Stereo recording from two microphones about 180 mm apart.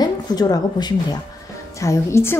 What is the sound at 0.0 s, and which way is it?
A woman's voice, 20° left (ahead or behind).